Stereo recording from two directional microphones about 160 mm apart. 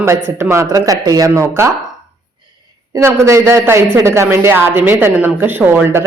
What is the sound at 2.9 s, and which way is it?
A woman's voice, 20° right (ahead or behind).